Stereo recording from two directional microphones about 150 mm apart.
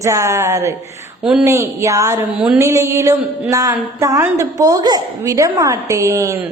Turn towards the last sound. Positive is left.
turn(degrees=-20)  # may be behind; listen again after turning